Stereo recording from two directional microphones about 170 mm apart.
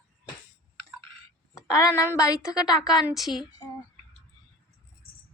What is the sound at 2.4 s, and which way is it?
Speech, 5° right (ahead or behind).